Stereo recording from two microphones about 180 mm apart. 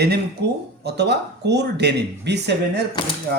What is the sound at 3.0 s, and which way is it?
Speech, 25° left (ahead or behind).